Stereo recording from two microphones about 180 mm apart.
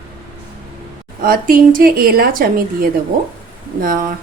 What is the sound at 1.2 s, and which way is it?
A woman's voice, 50° right (ahead or behind).